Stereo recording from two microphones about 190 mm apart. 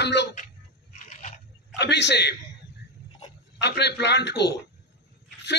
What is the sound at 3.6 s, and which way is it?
A man's voice, 60° left (ahead or behind).